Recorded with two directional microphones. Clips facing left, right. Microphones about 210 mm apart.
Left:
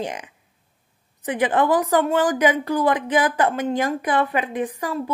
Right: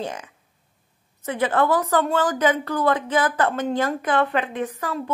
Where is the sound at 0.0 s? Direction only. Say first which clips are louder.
Left 1 dB; 15° left (ahead or behind).